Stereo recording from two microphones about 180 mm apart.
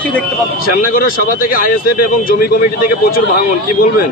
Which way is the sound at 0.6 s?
50° left (ahead or behind).